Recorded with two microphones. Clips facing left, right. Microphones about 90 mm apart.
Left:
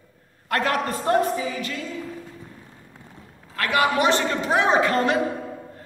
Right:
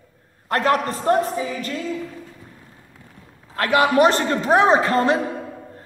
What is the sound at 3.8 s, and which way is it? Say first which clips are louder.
A man's voice: right 4 dB; 40° right (ahead or behind).